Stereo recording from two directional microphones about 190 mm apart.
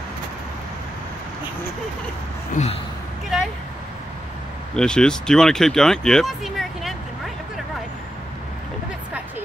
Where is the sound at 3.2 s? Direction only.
Centre (ahead or behind).